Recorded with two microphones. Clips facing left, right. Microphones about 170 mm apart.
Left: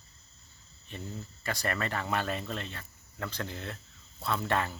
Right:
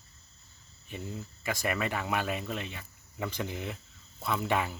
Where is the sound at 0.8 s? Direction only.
10° right (ahead or behind).